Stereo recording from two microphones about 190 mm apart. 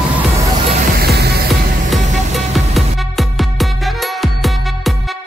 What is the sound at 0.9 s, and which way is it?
Music, 55° right (ahead or behind).